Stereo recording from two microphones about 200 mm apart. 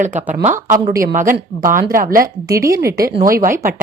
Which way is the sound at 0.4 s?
35° right (ahead or behind).